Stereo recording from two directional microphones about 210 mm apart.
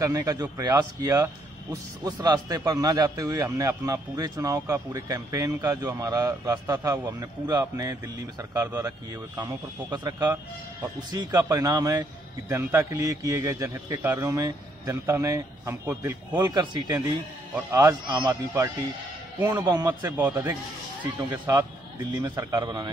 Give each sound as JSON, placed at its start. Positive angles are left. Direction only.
{"t": 0.0, "sound": "speech", "side_deg": -15}
{"t": 21.3, "sound": "a man's voice", "side_deg": -15}